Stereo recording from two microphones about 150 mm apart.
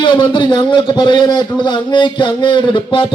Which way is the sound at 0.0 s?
30° left (ahead or behind).